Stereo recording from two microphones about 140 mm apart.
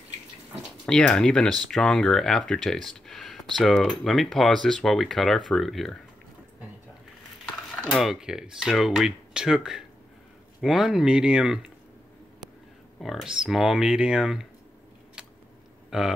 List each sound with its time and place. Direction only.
0.8 s speech: 5° left (ahead or behind)
7.9 s speech: centre (ahead or behind)
13.0 s speech: centre (ahead or behind)
15.9 s speech: 5° right (ahead or behind)